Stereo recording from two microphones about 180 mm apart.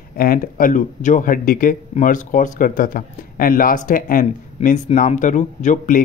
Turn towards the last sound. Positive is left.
turn(degrees=45)  # may be behind; listen again after turning